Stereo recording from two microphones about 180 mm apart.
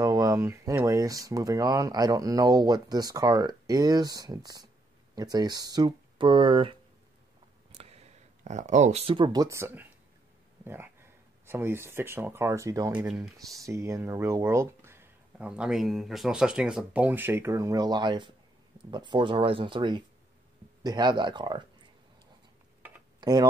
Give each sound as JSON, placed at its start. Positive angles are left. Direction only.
{"t": 0.0, "sound": "speech", "side_deg": -20}
{"t": 12.9, "sound": "speech", "side_deg": -5}
{"t": 13.5, "sound": "speech", "side_deg": -15}